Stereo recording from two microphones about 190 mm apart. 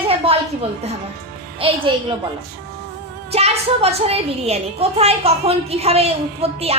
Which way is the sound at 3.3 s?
35° right (ahead or behind).